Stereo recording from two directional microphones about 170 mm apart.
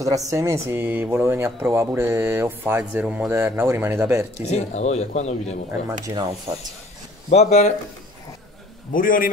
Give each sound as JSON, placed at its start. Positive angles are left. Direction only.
{"t": 0.0, "sound": "speech", "side_deg": -20}
{"t": 4.5, "sound": "speech", "side_deg": 40}
{"t": 6.0, "sound": "speech", "side_deg": -20}
{"t": 7.2, "sound": "speech", "side_deg": 40}
{"t": 8.9, "sound": "a man's voice", "side_deg": 55}